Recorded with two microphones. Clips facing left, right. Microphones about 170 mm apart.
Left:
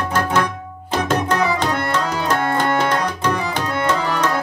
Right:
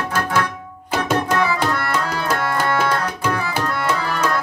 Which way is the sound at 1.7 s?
15° left (ahead or behind).